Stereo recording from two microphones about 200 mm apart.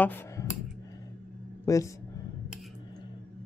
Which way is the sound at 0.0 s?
10° left (ahead or behind).